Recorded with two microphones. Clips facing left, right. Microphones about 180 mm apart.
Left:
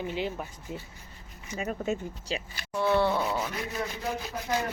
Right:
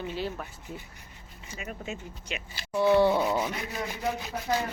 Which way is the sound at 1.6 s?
40° left (ahead or behind).